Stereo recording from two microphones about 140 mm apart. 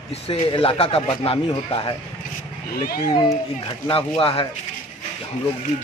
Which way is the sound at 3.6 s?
40° left (ahead or behind).